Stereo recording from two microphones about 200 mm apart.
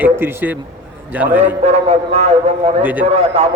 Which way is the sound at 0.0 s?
10° right (ahead or behind).